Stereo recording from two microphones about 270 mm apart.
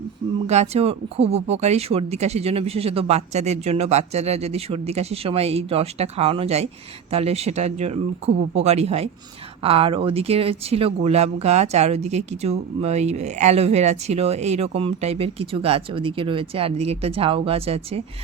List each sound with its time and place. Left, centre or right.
0.4 s speech: right